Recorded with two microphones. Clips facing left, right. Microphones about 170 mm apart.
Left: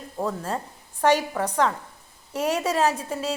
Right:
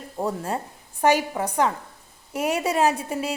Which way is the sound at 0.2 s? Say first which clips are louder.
Right 1 dB; 15° right (ahead or behind).